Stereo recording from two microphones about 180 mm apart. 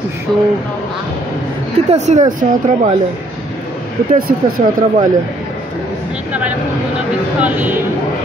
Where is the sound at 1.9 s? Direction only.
40° right (ahead or behind).